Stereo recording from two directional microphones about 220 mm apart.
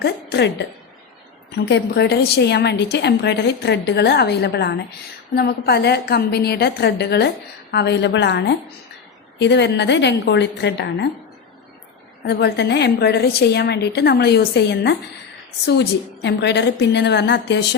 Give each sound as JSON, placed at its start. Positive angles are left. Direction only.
{"t": 0.0, "sound": "a woman's voice", "side_deg": 50}
{"t": 12.2, "sound": "a woman's voice", "side_deg": 50}